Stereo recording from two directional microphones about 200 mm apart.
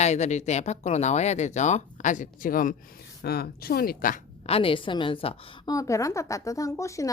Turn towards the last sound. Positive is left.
turn(degrees=15)  # may be behind; listen again after turning